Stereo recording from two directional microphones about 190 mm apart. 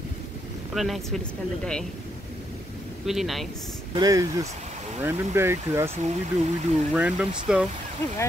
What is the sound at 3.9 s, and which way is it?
Speech, 20° right (ahead or behind).